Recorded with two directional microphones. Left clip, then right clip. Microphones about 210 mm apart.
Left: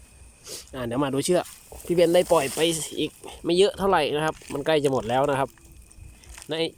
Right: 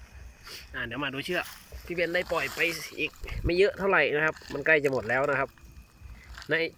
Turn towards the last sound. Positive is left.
turn(degrees=20)  # may be behind; listen again after turning